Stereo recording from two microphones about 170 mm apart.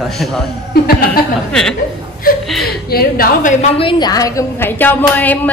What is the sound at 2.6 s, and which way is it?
Speech, 65° left (ahead or behind).